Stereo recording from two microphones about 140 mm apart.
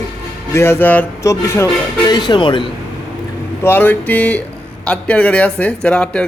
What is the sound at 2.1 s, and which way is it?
Speech, 30° left (ahead or behind).